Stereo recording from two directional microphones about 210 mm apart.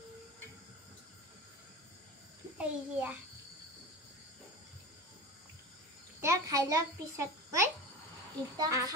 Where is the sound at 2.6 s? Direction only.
5° right (ahead or behind).